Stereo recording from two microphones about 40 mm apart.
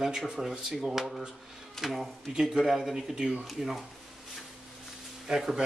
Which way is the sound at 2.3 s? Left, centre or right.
Centre.